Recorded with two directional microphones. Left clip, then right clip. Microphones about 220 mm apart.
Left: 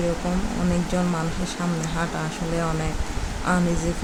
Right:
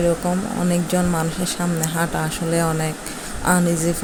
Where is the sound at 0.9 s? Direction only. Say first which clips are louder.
Right 4 dB; 15° right (ahead or behind).